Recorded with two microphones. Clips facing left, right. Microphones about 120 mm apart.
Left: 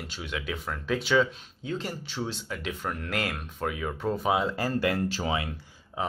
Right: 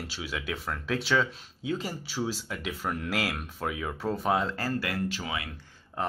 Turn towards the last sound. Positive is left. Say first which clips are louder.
# even
turn(degrees=0)  # may be behind; listen again after turning